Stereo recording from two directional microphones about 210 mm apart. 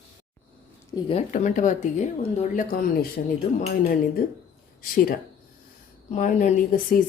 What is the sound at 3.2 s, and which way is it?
Speech, 40° left (ahead or behind).